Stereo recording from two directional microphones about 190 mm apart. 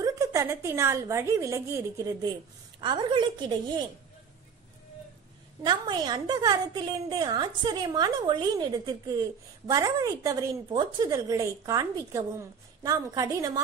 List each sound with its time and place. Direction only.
0.0 s a woman's voice: 15° right (ahead or behind)
5.6 s a woman's voice: 25° right (ahead or behind)